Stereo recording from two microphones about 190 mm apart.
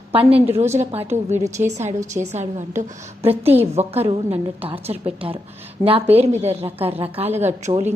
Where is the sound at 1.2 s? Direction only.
15° right (ahead or behind).